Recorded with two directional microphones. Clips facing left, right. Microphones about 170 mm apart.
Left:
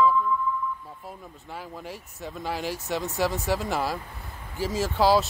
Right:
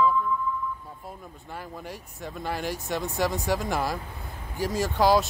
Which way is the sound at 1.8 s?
5° left (ahead or behind).